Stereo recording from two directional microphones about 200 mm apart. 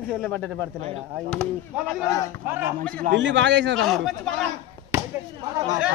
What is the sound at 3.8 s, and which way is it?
Speech, centre (ahead or behind).